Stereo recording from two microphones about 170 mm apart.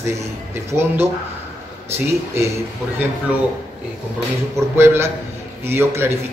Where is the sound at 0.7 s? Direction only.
15° right (ahead or behind).